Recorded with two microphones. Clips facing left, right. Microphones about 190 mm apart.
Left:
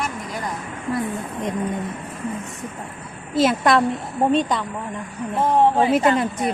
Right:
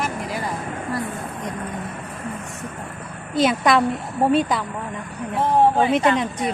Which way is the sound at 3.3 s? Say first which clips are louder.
Left 1 dB; centre (ahead or behind).